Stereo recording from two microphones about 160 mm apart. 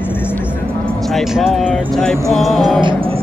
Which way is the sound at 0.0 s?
15° left (ahead or behind).